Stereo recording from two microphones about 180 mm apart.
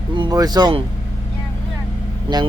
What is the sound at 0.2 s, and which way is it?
Speech, 20° right (ahead or behind).